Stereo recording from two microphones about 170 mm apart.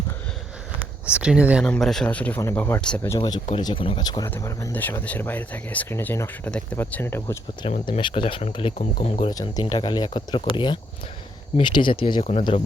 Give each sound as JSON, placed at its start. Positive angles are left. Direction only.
{"t": 1.1, "sound": "speech", "side_deg": -5}
{"t": 3.2, "sound": "speech", "side_deg": 25}
{"t": 7.6, "sound": "speech", "side_deg": 30}
{"t": 9.3, "sound": "speech", "side_deg": 25}